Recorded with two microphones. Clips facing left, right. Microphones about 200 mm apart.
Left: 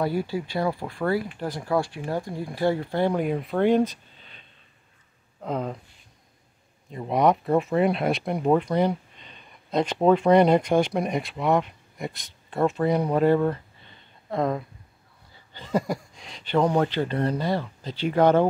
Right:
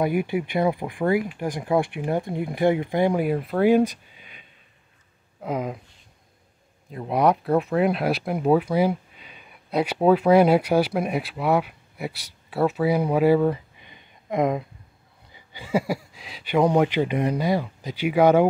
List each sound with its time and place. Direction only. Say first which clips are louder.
0.0 s speech: right 3 dB; 15° right (ahead or behind)
6.9 s speech: even; centre (ahead or behind)